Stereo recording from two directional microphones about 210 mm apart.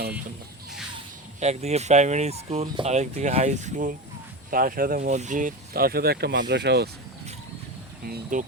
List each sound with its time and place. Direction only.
1.4 s speech: 30° right (ahead or behind); by 6.9 s 50° right (ahead or behind)
8.0 s speech: 40° right (ahead or behind)